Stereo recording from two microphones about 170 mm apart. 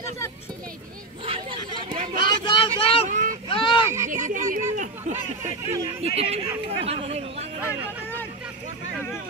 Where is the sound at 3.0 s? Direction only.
45° right (ahead or behind).